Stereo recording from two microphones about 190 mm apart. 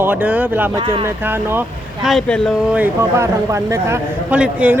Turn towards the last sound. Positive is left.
turn(degrees=-5)  # may be behind; listen again after turning